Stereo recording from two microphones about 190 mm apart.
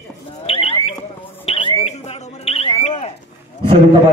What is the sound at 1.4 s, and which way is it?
Smoke detector, 30° left (ahead or behind).